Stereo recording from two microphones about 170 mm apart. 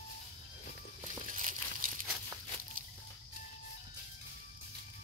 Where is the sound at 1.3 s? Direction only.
50° right (ahead or behind).